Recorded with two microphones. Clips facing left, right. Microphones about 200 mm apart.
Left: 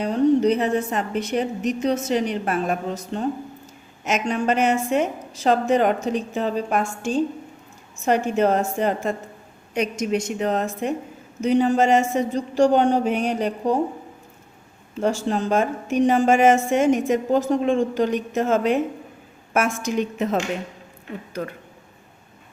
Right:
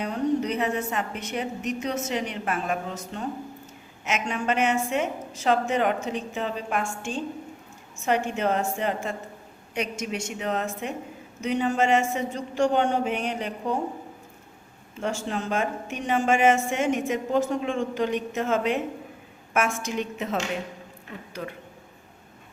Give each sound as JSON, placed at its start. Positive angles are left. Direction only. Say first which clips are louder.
{"t": 0.0, "sound": "a woman's voice", "louder": "left 8 dB", "side_deg": 35}
{"t": 15.0, "sound": "a woman's voice", "louder": "left 7 dB", "side_deg": 35}